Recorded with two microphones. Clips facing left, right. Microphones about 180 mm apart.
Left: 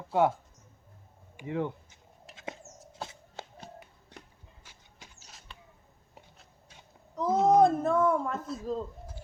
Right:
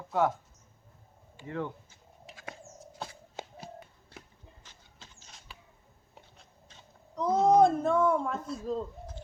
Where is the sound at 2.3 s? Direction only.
Centre (ahead or behind).